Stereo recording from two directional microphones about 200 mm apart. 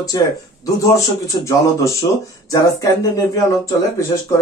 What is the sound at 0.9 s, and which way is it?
Speech, 15° left (ahead or behind).